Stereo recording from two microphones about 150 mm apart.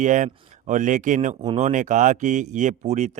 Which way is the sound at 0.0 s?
55° right (ahead or behind).